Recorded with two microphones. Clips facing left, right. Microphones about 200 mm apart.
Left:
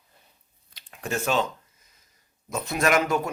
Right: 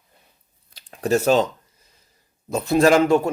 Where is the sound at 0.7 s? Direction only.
35° right (ahead or behind).